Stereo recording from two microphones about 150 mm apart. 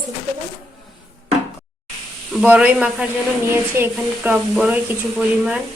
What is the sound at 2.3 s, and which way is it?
A woman's voice, 10° right (ahead or behind).